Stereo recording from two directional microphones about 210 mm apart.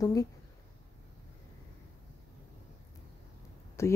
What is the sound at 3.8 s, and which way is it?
Speech, 15° left (ahead or behind).